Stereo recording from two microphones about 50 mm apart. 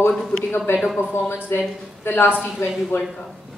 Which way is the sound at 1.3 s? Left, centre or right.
Left.